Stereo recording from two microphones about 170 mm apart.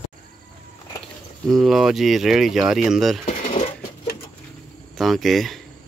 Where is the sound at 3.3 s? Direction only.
45° left (ahead or behind).